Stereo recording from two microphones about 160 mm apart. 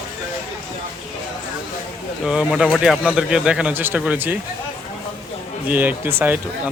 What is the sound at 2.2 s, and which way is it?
Speech, 5° right (ahead or behind).